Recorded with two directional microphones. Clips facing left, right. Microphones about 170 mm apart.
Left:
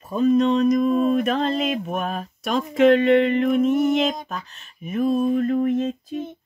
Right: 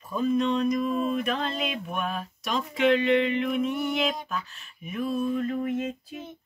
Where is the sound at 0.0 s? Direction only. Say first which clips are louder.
Left 7 dB; 40° left (ahead or behind).